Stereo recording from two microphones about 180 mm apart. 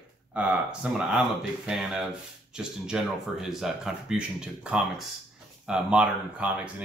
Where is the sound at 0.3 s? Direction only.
5° right (ahead or behind).